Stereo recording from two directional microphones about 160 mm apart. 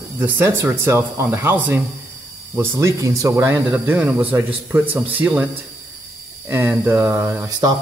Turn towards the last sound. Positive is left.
turn(degrees=-25)  # may be behind; listen again after turning